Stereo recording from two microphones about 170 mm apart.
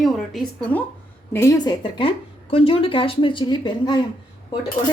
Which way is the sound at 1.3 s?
20° left (ahead or behind).